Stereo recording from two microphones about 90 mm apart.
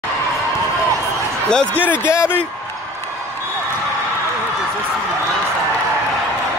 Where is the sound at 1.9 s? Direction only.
30° left (ahead or behind).